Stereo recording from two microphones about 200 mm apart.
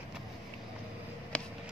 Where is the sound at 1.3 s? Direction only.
5° left (ahead or behind).